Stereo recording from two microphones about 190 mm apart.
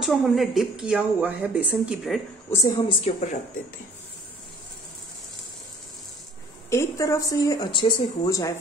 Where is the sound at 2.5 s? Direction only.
15° left (ahead or behind).